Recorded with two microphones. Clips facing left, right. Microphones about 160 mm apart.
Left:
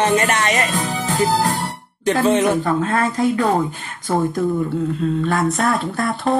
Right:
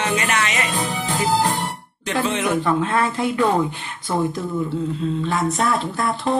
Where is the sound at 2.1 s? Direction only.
40° left (ahead or behind).